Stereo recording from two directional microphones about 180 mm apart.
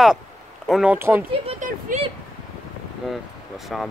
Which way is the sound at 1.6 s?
50° right (ahead or behind).